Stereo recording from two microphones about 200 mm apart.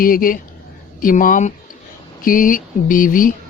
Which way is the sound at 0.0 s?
45° left (ahead or behind).